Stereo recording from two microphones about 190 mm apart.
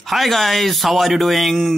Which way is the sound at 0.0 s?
Centre (ahead or behind).